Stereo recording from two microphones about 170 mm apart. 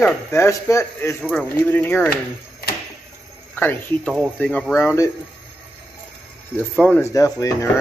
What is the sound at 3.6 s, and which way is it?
Speech, 10° left (ahead or behind).